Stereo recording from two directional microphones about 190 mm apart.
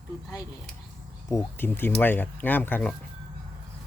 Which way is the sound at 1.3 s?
15° left (ahead or behind).